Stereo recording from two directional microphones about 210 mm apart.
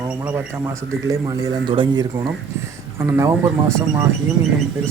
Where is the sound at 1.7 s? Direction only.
25° right (ahead or behind).